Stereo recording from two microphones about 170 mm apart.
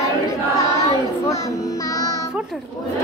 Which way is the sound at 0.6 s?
20° left (ahead or behind).